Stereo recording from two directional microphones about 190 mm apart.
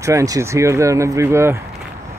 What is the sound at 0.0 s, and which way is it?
Speech, 15° right (ahead or behind).